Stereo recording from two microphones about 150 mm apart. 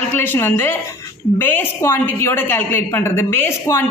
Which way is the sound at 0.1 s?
15° left (ahead or behind).